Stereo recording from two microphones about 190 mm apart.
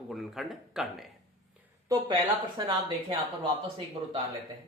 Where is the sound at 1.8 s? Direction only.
20° right (ahead or behind).